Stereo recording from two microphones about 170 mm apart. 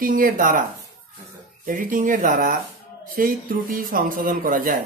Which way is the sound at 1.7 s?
55° right (ahead or behind).